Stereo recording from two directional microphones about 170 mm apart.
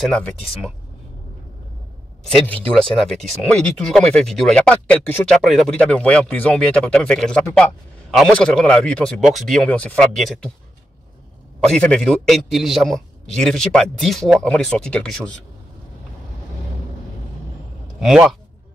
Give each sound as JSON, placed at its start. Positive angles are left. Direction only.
{"t": 0.0, "sound": "speech", "side_deg": 0}
{"t": 2.2, "sound": "speech", "side_deg": 5}
{"t": 11.7, "sound": "speech", "side_deg": 5}